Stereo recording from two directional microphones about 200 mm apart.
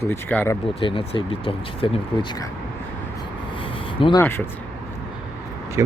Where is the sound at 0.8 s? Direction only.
25° left (ahead or behind).